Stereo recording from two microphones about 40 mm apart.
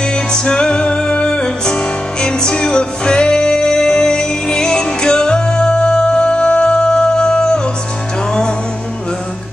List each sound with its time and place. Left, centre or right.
0.1 s music: left